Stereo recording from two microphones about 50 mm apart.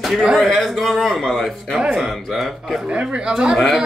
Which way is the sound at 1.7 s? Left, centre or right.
Centre.